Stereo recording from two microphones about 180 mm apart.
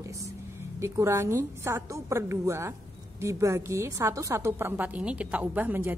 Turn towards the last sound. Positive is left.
turn(degrees=-10)  # may be behind; listen again after turning